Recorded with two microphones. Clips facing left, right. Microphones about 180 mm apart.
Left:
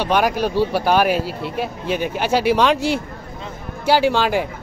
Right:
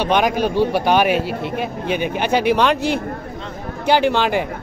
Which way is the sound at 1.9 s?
55° right (ahead or behind).